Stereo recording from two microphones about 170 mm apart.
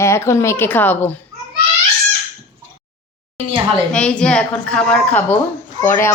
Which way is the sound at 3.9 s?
5° left (ahead or behind).